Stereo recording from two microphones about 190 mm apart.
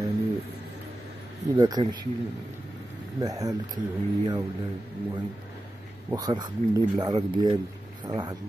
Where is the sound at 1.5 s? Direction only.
20° right (ahead or behind).